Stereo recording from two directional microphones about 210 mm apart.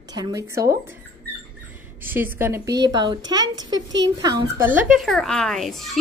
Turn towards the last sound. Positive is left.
turn(degrees=0)  # may be behind; listen again after turning